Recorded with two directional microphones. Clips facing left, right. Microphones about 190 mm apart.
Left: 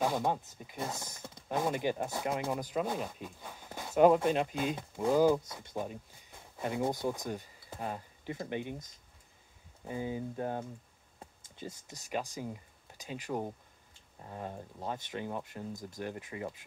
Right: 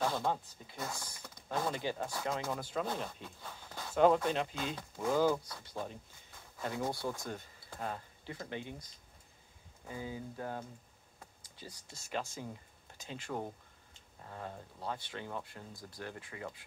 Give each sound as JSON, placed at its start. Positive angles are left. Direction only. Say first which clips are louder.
{"t": 0.0, "sound": "speech", "louder": "left 3 dB", "side_deg": 15}
{"t": 9.8, "sound": "speech", "louder": "left 6 dB", "side_deg": 20}
{"t": 11.1, "sound": "computer keyboard", "louder": "left 6 dB", "side_deg": 25}
{"t": 12.1, "sound": "speech", "louder": "left 3 dB", "side_deg": 10}
{"t": 15.7, "sound": "speech", "louder": "left 8 dB", "side_deg": 45}
{"t": 16.0, "sound": "speech", "louder": "left 4 dB", "side_deg": 15}